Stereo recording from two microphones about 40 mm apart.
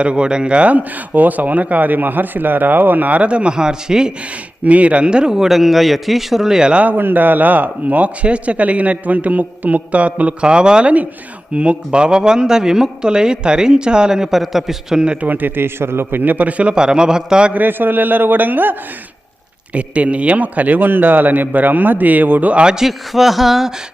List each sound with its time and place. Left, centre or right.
0.0 s speech: right
4.6 s a man's voice: right
6.8 s speech: right
10.4 s speech: right
15.2 s a man's voice: right
16.2 s speech: right
16.7 s speech: right
17.5 s a man's voice: right
19.7 s a man's voice: right
22.7 s speech: centre